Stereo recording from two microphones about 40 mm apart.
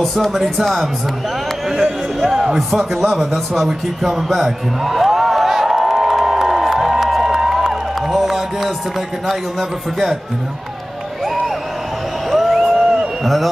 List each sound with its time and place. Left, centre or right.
0.0 s a man's voice: centre
2.1 s speech: centre
4.0 s a sound: centre
9.3 s a man's voice: centre
12.3 s music: centre
12.7 s a sound: centre
13.2 s a man's voice: centre